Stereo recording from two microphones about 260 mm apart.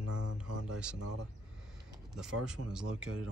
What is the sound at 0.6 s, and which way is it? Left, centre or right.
Speech, centre.